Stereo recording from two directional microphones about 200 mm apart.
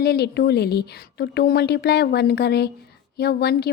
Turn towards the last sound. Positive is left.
turn(degrees=55)  # may be behind; listen again after turning